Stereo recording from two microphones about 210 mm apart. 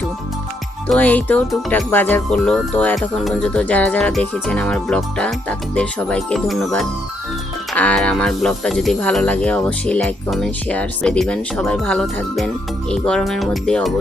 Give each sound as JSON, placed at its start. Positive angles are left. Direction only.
{"t": 0.9, "sound": "speech", "side_deg": 10}
{"t": 7.7, "sound": "speech", "side_deg": 5}